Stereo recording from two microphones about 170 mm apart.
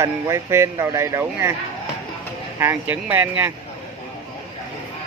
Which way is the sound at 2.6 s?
10° right (ahead or behind).